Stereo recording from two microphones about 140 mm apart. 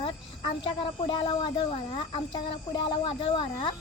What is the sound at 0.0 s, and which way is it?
Speech, 35° left (ahead or behind).